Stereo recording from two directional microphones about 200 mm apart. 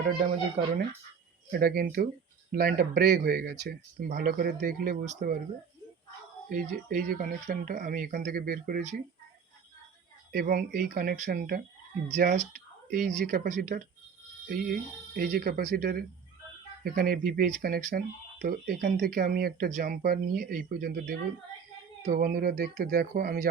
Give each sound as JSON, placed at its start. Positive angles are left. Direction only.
{"t": 0.2, "sound": "speech", "side_deg": -35}
{"t": 1.5, "sound": "speech", "side_deg": -50}
{"t": 6.5, "sound": "speech", "side_deg": -45}
{"t": 10.3, "sound": "speech", "side_deg": -45}